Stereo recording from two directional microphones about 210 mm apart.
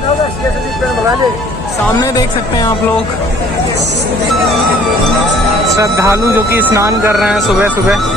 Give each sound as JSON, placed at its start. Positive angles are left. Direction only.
{"t": 2.0, "sound": "speech", "side_deg": 20}
{"t": 5.8, "sound": "speech", "side_deg": -15}